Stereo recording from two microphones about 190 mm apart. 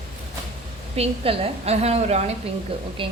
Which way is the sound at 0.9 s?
30° right (ahead or behind).